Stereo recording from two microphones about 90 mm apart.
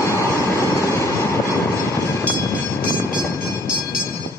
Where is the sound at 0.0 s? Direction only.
35° left (ahead or behind).